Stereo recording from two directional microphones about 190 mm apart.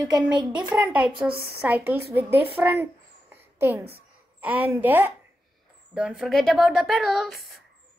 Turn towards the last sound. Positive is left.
turn(degrees=0)  # may be behind; listen again after turning